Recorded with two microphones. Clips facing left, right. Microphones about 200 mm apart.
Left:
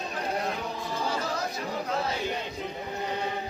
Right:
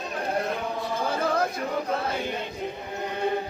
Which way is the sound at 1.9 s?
55° right (ahead or behind).